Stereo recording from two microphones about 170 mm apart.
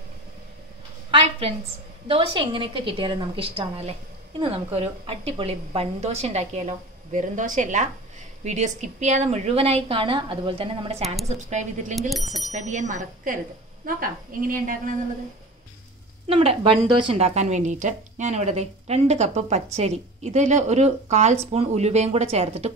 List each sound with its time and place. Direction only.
2.0 s a woman's voice: 30° right (ahead or behind); by 14.8 s 55° right (ahead or behind)
16.3 s a woman's voice: 35° right (ahead or behind)